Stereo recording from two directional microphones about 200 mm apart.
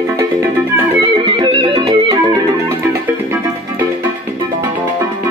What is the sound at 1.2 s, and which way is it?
Music, 25° right (ahead or behind).